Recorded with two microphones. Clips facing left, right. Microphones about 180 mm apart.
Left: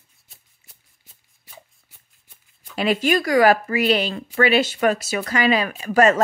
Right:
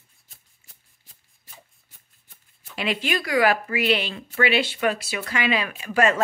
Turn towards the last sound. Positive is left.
turn(degrees=40)  # may be behind; listen again after turning